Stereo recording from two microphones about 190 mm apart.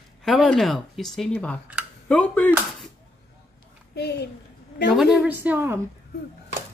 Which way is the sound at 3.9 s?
60° left (ahead or behind).